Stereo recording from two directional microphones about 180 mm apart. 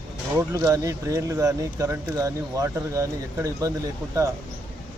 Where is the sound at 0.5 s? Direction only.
20° right (ahead or behind).